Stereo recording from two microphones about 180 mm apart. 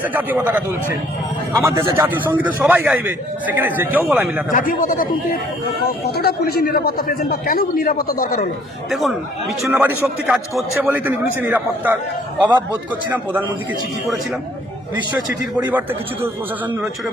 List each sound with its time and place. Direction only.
0.0 s a man's voice: 10° right (ahead or behind)
4.5 s a man's voice: 50° left (ahead or behind)
6.1 s speech: 60° left (ahead or behind)
8.9 s a man's voice: centre (ahead or behind)
15.7 s a man's voice: 10° right (ahead or behind)